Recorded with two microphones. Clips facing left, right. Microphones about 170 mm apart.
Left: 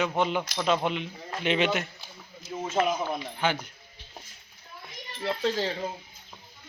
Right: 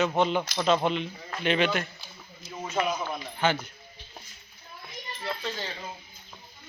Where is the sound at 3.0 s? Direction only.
15° left (ahead or behind).